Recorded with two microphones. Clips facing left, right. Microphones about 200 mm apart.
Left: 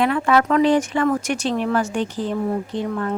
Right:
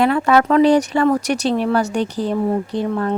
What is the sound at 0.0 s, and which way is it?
Speech, 40° right (ahead or behind).